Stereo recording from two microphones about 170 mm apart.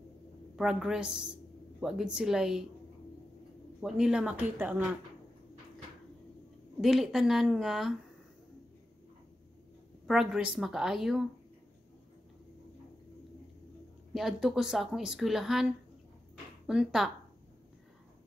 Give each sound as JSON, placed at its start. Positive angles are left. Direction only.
{"t": 0.6, "sound": "speech", "side_deg": -5}
{"t": 3.8, "sound": "speech", "side_deg": -5}
{"t": 6.8, "sound": "speech", "side_deg": 0}
{"t": 10.0, "sound": "speech", "side_deg": -5}
{"t": 14.1, "sound": "speech", "side_deg": 0}